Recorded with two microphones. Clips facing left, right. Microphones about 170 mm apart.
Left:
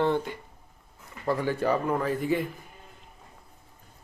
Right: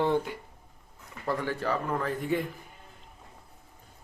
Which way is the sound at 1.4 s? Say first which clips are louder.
Left 6 dB; 15° left (ahead or behind).